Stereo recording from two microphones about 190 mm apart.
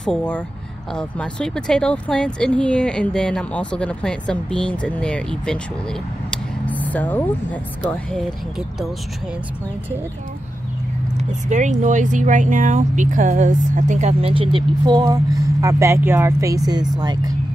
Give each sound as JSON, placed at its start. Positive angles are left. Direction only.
{"t": 0.0, "sound": "speech", "side_deg": 5}
{"t": 6.3, "sound": "vehicle", "side_deg": 5}
{"t": 7.8, "sound": "speech", "side_deg": 5}
{"t": 11.4, "sound": "speech", "side_deg": -40}